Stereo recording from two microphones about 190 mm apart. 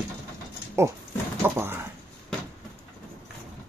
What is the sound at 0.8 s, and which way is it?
Speech, 15° right (ahead or behind).